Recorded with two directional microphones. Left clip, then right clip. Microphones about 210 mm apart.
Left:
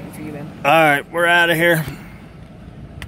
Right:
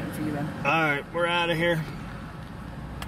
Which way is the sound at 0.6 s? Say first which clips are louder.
Left 11 dB; 55° left (ahead or behind).